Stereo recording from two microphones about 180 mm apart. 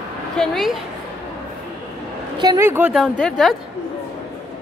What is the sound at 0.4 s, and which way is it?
Speech, centre (ahead or behind).